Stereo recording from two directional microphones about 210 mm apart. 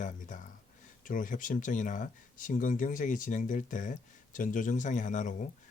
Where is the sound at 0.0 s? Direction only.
35° left (ahead or behind).